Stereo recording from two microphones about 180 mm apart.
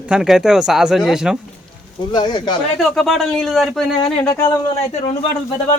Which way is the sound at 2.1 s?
25° left (ahead or behind).